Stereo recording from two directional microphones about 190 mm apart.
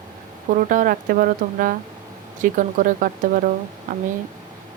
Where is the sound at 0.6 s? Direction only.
45° right (ahead or behind).